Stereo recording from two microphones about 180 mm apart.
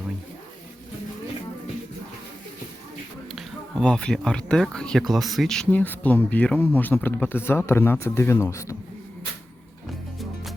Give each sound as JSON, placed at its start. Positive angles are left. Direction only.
{"t": 3.3, "sound": "speech", "side_deg": 5}